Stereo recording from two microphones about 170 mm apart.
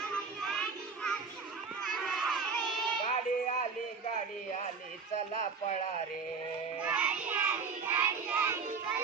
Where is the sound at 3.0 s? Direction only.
40° left (ahead or behind).